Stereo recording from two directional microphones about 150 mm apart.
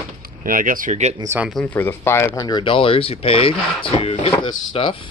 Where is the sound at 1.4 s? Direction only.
Centre (ahead or behind).